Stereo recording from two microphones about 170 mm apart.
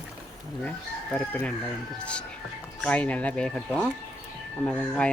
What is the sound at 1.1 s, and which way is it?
Speech, 5° left (ahead or behind).